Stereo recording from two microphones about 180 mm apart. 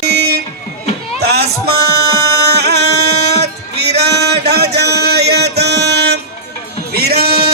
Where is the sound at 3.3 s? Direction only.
65° right (ahead or behind).